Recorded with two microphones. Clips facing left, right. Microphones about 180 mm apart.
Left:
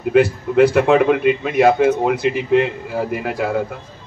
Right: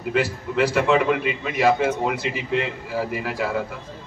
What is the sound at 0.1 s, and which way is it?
A man's voice, 55° left (ahead or behind).